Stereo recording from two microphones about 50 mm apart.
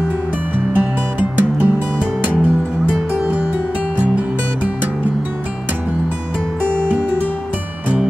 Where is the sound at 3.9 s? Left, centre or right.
Right.